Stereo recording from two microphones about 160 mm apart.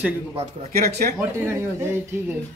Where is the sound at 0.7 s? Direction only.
75° right (ahead or behind).